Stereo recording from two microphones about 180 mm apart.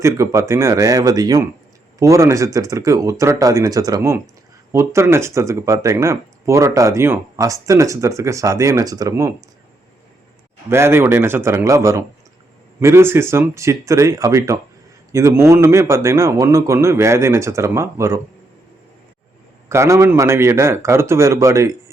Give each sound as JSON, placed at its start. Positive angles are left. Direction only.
{"t": 0.0, "sound": "speech", "side_deg": -15}
{"t": 10.7, "sound": "speech", "side_deg": -15}
{"t": 19.6, "sound": "speech", "side_deg": -15}